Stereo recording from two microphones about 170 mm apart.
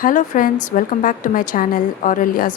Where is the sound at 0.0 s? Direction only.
50° left (ahead or behind).